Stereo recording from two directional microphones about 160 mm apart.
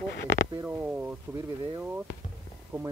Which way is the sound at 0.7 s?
10° right (ahead or behind).